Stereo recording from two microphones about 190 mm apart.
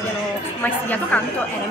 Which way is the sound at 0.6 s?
10° left (ahead or behind).